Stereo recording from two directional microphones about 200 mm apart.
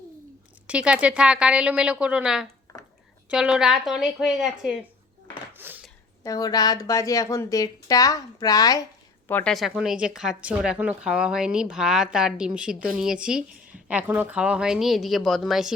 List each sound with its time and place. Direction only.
0.7 s speech: 5° right (ahead or behind)
5.5 s dishes: 10° right (ahead or behind)
6.2 s speech: 20° left (ahead or behind)
9.2 s speech: 10° left (ahead or behind)